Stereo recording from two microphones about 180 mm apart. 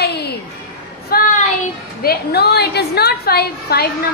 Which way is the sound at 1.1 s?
55° left (ahead or behind).